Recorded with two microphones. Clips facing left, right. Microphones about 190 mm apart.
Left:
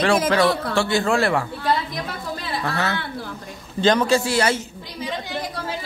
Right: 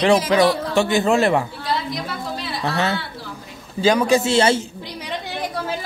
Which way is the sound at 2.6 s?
25° right (ahead or behind).